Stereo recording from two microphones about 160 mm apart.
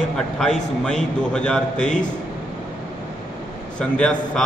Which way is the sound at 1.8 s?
50° left (ahead or behind).